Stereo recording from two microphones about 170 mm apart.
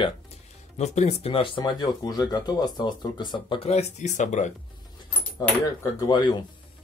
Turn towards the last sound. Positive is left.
turn(degrees=25)  # may be behind; listen again after turning